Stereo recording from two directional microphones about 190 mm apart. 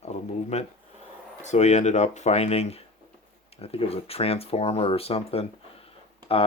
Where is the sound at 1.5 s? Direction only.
35° left (ahead or behind).